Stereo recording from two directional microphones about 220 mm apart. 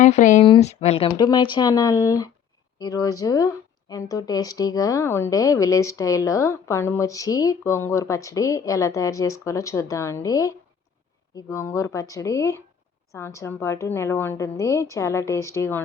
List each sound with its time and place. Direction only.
0.0 s speech: 35° left (ahead or behind); by 15.8 s 10° left (ahead or behind)